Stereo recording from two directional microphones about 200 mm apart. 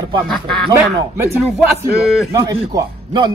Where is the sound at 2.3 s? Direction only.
15° right (ahead or behind).